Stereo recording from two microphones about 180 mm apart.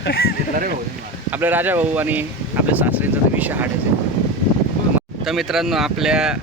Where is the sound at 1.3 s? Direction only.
10° right (ahead or behind).